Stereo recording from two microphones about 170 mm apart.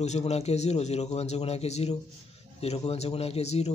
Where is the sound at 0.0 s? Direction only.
40° left (ahead or behind).